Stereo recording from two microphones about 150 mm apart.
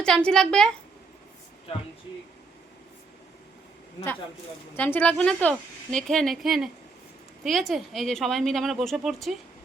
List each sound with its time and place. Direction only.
0.0 s speech: 5° left (ahead or behind)
4.8 s speech: 10° left (ahead or behind)